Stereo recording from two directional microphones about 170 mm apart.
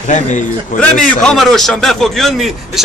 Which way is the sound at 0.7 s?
50° left (ahead or behind).